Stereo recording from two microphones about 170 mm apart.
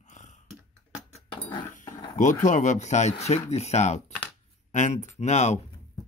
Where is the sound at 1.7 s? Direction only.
45° left (ahead or behind).